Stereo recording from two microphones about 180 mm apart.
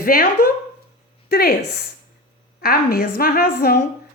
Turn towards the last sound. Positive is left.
turn(degrees=55)  # may be behind; listen again after turning